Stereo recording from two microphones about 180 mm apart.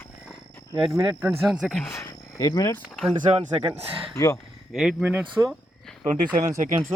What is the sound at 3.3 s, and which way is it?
Speech, 35° right (ahead or behind).